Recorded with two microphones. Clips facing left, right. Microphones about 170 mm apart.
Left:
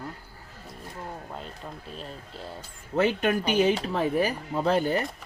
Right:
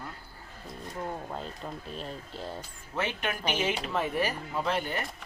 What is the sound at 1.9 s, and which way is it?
Speech, centre (ahead or behind).